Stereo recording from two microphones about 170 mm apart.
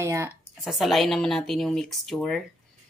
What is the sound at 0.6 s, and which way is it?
A woman's voice, centre (ahead or behind).